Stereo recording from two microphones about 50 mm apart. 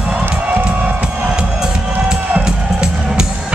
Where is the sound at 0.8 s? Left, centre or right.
Right.